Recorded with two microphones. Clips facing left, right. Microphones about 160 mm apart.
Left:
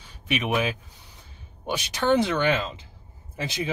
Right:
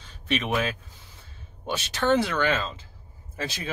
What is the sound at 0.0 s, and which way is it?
Speech, 10° left (ahead or behind).